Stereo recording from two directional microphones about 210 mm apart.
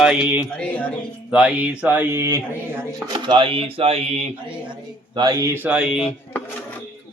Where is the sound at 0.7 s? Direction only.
5° left (ahead or behind).